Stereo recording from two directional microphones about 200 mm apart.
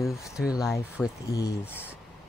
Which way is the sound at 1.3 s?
20° left (ahead or behind).